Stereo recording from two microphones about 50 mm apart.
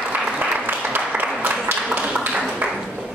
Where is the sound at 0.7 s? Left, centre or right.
Right.